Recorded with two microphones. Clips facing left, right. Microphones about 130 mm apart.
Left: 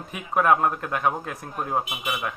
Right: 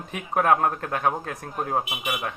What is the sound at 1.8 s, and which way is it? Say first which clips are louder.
Speech: even; 15° right (ahead or behind).